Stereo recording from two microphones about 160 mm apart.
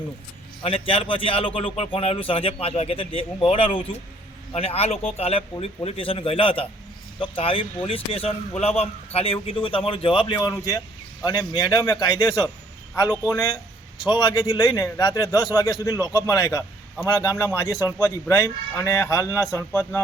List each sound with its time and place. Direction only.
0.6 s a man's voice: 35° left (ahead or behind); by 20.0 s 15° left (ahead or behind)